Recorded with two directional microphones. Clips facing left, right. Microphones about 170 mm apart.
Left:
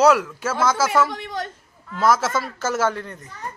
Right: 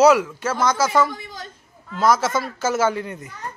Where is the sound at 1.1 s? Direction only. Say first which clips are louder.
Left 6 dB; 70° left (ahead or behind).